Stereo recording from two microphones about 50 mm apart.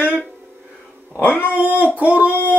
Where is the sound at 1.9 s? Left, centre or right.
Right.